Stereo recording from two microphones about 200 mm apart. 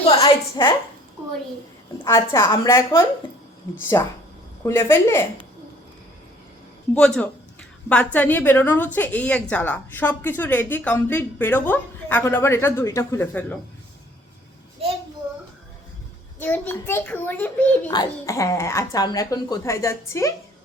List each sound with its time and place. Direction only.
0.0 s a sound: 30° left (ahead or behind)
2.0 s a woman's voice: 15° left (ahead or behind)
6.9 s a woman's voice: 5° left (ahead or behind)
16.4 s a woman's voice: 10° left (ahead or behind)